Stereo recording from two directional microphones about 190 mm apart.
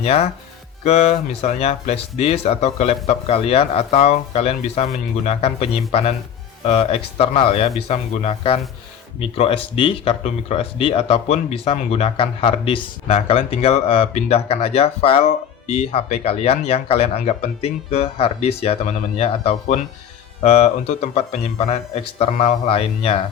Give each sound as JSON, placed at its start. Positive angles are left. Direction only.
{"t": 0.0, "sound": "speech", "side_deg": 35}